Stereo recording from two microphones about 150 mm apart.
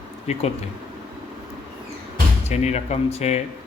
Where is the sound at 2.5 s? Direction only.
45° left (ahead or behind).